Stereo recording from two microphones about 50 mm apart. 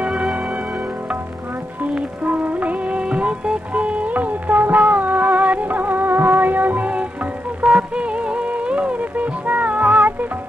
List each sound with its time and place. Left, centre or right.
0.1 s music: centre
2.0 s music: right